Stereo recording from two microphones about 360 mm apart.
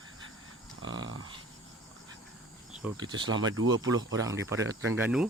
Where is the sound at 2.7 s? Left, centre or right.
Centre.